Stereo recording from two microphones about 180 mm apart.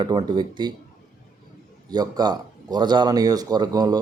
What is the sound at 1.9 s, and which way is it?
Speech, 20° right (ahead or behind).